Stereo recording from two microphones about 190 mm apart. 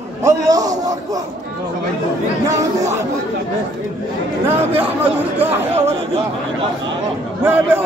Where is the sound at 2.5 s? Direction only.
15° right (ahead or behind).